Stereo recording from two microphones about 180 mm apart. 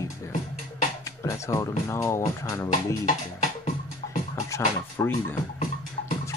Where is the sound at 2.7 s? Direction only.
45° left (ahead or behind).